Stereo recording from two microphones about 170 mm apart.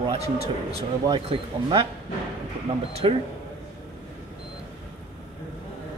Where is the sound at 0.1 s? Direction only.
35° right (ahead or behind).